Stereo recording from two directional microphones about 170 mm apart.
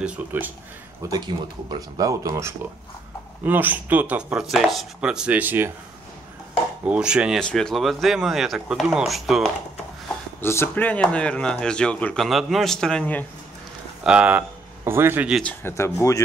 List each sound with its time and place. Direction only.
0.0 s speech: 10° right (ahead or behind)
1.0 s speech: 25° right (ahead or behind)
6.9 s speech: 5° right (ahead or behind)
10.4 s speech: 15° left (ahead or behind)
14.0 s speech: 5° right (ahead or behind)
15.4 s speech: 15° left (ahead or behind)